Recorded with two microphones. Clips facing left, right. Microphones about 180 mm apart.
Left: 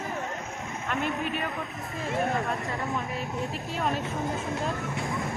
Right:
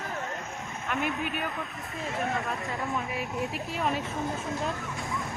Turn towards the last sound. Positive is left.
turn(degrees=0)  # may be behind; listen again after turning